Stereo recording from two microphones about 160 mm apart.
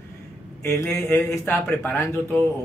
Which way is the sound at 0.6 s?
15° left (ahead or behind).